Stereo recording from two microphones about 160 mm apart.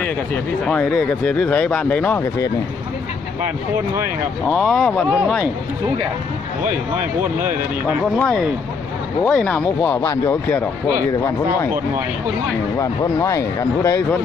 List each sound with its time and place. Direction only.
0.7 s speech: 5° left (ahead or behind)
4.5 s speech: 5° left (ahead or behind)
9.2 s speech: 5° left (ahead or behind)
12.7 s speech: 20° left (ahead or behind)